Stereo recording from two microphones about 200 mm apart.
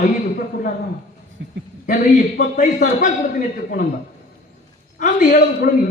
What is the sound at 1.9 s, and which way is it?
A man's voice, 45° left (ahead or behind).